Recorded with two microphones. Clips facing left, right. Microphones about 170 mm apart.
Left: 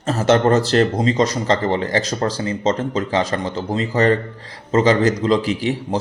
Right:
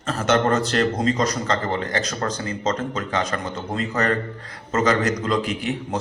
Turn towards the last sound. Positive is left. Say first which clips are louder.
# left 5 dB
turn(degrees=35)  # may be behind; listen again after turning